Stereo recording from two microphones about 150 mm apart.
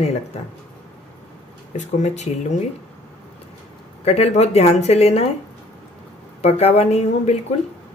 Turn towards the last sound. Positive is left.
turn(degrees=45)  # may be behind; listen again after turning